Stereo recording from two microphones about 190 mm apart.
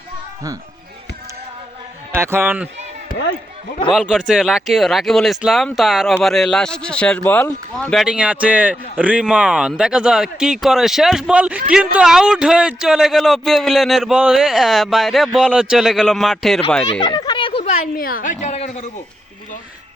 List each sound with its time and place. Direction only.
2.1 s a man's voice: 15° right (ahead or behind)
3.9 s a man's voice: 5° right (ahead or behind)
17.0 s a sound: 25° left (ahead or behind)
17.9 s speech: 50° left (ahead or behind)